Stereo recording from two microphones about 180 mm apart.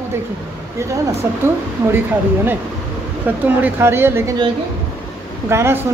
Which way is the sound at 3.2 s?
10° right (ahead or behind).